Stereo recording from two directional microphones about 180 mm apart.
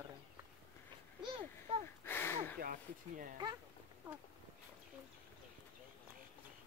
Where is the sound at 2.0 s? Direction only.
10° left (ahead or behind).